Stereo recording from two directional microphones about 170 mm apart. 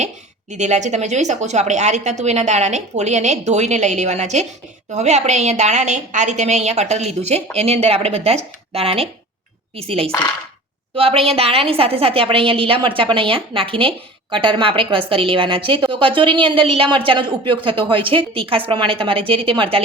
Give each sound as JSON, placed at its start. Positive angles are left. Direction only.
{"t": 0.5, "sound": "a woman's voice", "side_deg": -45}